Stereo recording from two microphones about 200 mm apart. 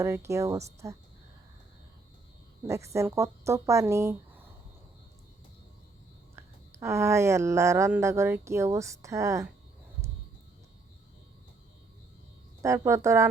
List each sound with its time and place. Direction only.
0.0 s speech: 15° right (ahead or behind)
2.6 s speech: 15° right (ahead or behind)
6.3 s speech: 15° right (ahead or behind)
12.6 s speech: 15° right (ahead or behind)